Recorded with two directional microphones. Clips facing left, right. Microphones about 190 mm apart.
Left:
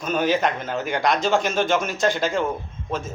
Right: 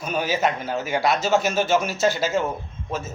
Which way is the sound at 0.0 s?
10° right (ahead or behind).